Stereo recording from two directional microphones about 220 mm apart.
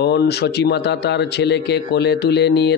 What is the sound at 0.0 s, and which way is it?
A man's voice, 50° left (ahead or behind).